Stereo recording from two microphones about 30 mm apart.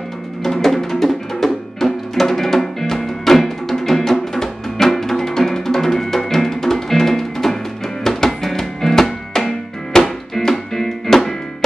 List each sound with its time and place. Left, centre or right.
0.4 s music: centre